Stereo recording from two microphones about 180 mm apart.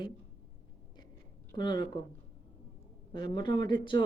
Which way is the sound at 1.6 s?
25° left (ahead or behind).